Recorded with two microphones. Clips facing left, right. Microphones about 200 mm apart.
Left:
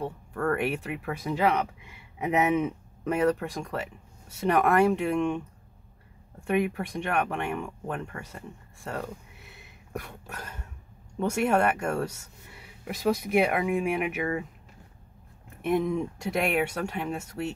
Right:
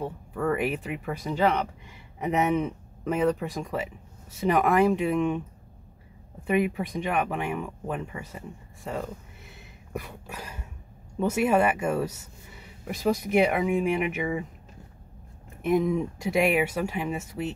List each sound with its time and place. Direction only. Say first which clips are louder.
0.0 s speech: right 1 dB; 5° right (ahead or behind)
6.4 s speech: right 1 dB; centre (ahead or behind)
9.0 s a sound: right 1 dB; centre (ahead or behind)
11.1 s speech: right 2 dB; 5° right (ahead or behind)
15.6 s speech: right 2 dB; centre (ahead or behind)